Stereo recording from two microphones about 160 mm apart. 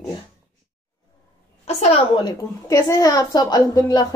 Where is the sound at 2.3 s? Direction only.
20° left (ahead or behind).